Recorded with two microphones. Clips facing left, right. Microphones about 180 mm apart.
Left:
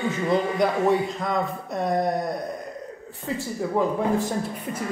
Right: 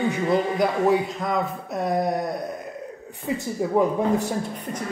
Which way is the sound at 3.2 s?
15° right (ahead or behind).